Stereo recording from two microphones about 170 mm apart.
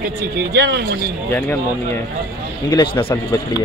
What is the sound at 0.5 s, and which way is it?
Speech, 90° right.